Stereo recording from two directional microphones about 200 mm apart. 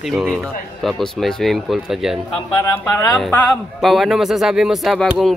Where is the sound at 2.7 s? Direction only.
15° left (ahead or behind).